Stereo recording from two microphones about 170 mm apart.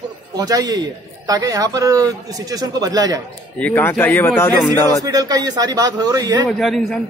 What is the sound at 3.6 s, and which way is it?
Speech, 10° left (ahead or behind).